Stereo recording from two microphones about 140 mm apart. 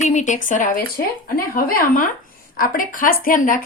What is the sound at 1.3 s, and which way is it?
A woman's voice, 90° left.